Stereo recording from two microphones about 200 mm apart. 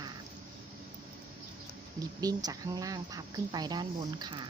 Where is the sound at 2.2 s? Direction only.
20° right (ahead or behind).